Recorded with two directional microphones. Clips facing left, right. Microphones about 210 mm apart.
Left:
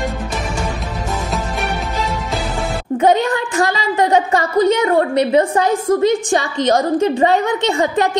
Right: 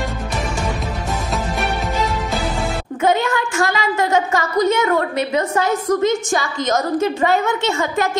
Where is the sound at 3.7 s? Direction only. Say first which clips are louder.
Left 4 dB; 35° left (ahead or behind).